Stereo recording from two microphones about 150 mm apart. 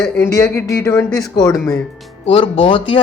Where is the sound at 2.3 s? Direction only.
35° left (ahead or behind).